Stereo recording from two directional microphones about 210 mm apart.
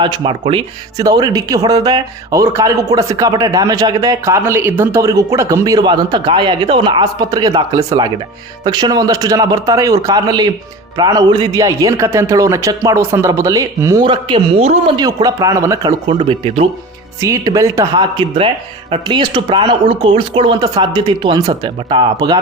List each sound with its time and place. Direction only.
0.0 s speech: 25° right (ahead or behind)
14.9 s speech: 20° right (ahead or behind)
17.2 s speech: 15° right (ahead or behind)